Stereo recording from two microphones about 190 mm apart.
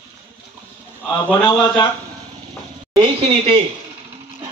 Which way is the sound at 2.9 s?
30° right (ahead or behind).